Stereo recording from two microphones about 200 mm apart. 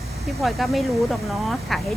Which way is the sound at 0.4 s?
Centre (ahead or behind).